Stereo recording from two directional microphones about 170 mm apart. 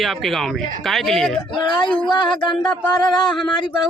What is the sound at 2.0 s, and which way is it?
Speech, 25° left (ahead or behind).